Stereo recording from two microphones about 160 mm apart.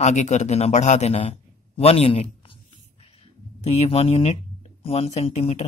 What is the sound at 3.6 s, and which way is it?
Speech, 40° left (ahead or behind).